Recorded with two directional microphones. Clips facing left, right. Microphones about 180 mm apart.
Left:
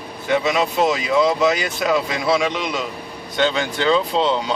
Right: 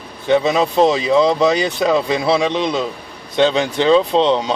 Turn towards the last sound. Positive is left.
turn(degrees=-25)  # may be behind; listen again after turning